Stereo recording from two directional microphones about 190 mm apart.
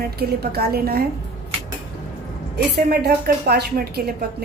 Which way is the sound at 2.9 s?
60° right (ahead or behind).